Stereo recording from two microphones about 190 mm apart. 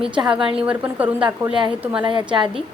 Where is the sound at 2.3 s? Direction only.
25° right (ahead or behind).